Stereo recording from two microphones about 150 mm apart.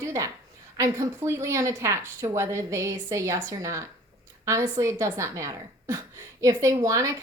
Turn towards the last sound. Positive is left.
turn(degrees=-20)  # may be behind; listen again after turning